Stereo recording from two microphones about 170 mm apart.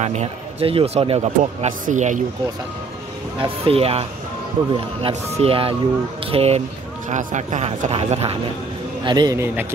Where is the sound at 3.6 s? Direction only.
35° right (ahead or behind).